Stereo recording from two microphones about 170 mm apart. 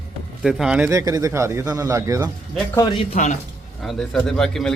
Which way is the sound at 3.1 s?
45° left (ahead or behind).